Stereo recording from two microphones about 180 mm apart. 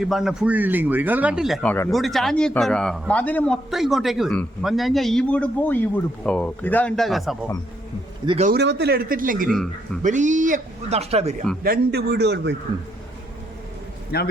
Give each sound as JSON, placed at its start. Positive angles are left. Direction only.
{"t": 0.0, "sound": "a man's voice", "side_deg": 0}
{"t": 8.4, "sound": "a man's voice", "side_deg": -70}
{"t": 9.5, "sound": "a man's voice", "side_deg": 0}
{"t": 10.0, "sound": "a man's voice", "side_deg": -45}
{"t": 11.6, "sound": "a man's voice", "side_deg": -60}
{"t": 14.1, "sound": "a man's voice", "side_deg": 60}